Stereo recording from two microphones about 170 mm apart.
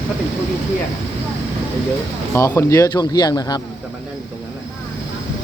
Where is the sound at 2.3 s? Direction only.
15° left (ahead or behind).